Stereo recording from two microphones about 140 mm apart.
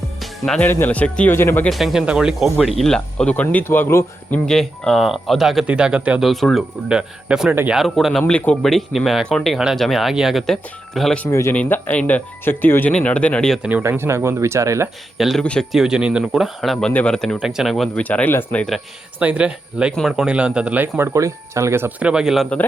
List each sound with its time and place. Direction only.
0.2 s music: centre (ahead or behind)
0.6 s speech: 15° left (ahead or behind)
1.7 s speech: centre (ahead or behind); by 4.4 s 15° left (ahead or behind)
4.4 s speech: 5° left (ahead or behind); by 7.8 s 15° right (ahead or behind)
7.8 s speech: centre (ahead or behind)
11.3 s speech: 20° left (ahead or behind)
13.6 s speech: 10° right (ahead or behind)
15.2 s speech: centre (ahead or behind)
18.0 s speech: 10° left (ahead or behind)
19.2 s speech: 10° right (ahead or behind)